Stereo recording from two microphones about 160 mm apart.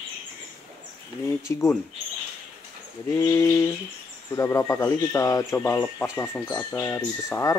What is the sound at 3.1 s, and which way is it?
Speech, 20° left (ahead or behind).